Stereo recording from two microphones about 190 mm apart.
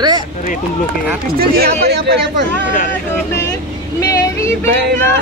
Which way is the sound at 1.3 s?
55° right (ahead or behind).